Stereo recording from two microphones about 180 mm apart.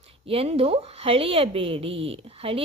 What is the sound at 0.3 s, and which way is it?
A woman's voice, 35° right (ahead or behind).